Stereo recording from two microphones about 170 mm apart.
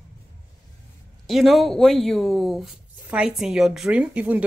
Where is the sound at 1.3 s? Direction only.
Centre (ahead or behind).